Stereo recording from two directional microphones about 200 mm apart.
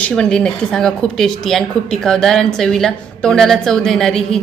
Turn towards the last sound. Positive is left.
turn(degrees=0)  # may be behind; listen again after turning